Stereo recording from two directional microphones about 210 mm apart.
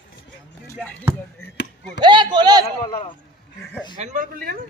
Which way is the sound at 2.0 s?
20° right (ahead or behind).